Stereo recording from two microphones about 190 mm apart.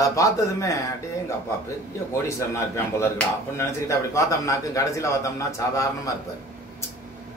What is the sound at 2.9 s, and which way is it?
Speech, 15° left (ahead or behind).